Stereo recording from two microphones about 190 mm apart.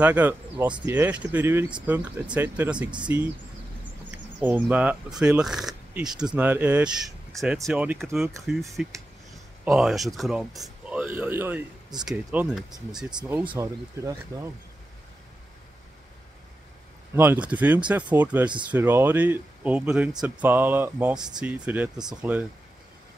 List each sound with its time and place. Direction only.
0.0 s speech: 10° right (ahead or behind)
4.4 s speech: 10° right (ahead or behind)
17.1 s speech: 10° right (ahead or behind)